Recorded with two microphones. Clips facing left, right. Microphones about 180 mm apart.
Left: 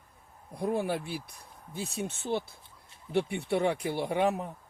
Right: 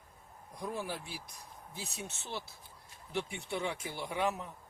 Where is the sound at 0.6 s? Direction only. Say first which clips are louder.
Left 9 dB; 60° left (ahead or behind).